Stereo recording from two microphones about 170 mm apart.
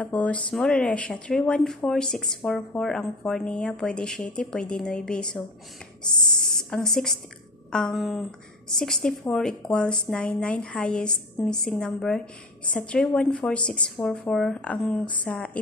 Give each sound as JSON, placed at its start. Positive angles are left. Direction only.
{"t": 0.0, "sound": "a woman's voice", "side_deg": 10}